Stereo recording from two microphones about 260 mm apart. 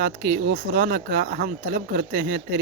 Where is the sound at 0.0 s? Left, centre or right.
Right.